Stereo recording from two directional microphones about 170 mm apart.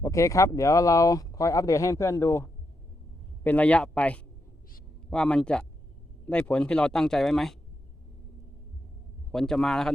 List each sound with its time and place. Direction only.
0.0 s speech: 20° left (ahead or behind); by 7.5 s centre (ahead or behind)
9.3 s speech: centre (ahead or behind)